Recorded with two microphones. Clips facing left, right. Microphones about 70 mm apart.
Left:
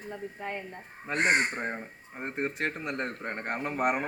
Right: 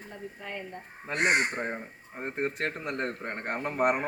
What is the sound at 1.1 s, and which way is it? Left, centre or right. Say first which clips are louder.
Speech: even; left.